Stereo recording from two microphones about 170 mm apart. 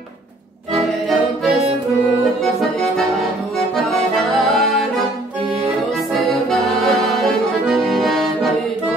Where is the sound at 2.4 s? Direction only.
Centre (ahead or behind).